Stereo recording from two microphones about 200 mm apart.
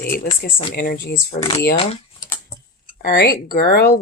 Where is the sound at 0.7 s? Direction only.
50° left (ahead or behind).